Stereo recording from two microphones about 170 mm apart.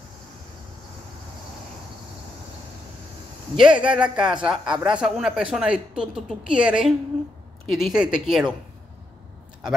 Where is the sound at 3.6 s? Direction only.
5° right (ahead or behind).